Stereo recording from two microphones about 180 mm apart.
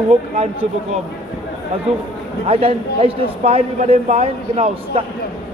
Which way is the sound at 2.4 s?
30° right (ahead or behind).